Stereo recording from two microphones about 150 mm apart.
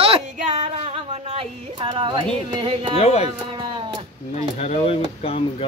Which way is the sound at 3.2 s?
30° right (ahead or behind).